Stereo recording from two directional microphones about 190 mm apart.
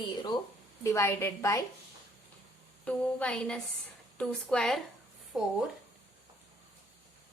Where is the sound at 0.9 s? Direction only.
15° left (ahead or behind).